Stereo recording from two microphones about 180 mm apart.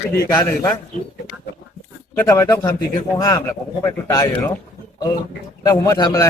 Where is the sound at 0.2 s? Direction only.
20° left (ahead or behind).